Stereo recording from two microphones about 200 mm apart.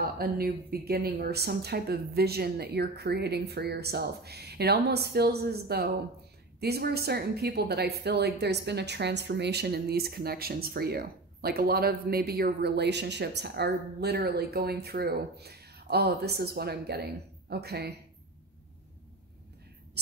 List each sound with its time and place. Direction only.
0.0 s a woman's voice: 45° right (ahead or behind)